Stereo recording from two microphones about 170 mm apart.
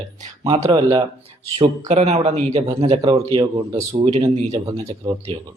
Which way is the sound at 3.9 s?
40° right (ahead or behind).